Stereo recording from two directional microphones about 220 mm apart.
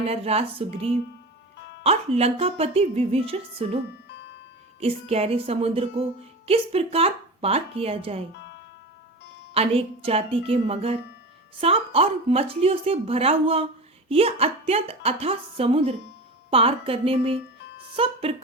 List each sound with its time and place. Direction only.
0.1 s music: 25° right (ahead or behind)
4.1 s music: 50° left (ahead or behind)
4.8 s music: 25° right (ahead or behind)
9.6 s music: 25° right (ahead or behind)
17.7 s speech: 25° right (ahead or behind)